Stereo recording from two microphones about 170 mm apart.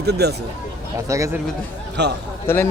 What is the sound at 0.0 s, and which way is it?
Speech, 70° right (ahead or behind).